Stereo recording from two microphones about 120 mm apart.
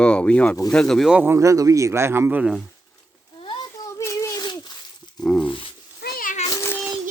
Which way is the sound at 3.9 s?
25° left (ahead or behind).